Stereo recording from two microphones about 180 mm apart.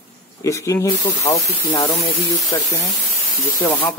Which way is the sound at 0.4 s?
15° left (ahead or behind).